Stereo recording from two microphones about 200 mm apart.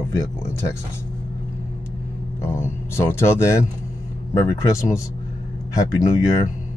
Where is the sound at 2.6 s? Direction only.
10° left (ahead or behind).